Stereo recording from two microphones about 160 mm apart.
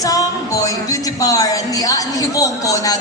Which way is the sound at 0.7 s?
20° left (ahead or behind).